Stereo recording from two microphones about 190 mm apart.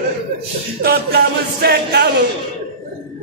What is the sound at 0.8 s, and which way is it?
Music, 50° right (ahead or behind).